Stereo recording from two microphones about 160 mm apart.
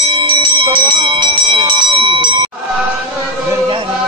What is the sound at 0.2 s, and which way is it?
Bell, 30° right (ahead or behind).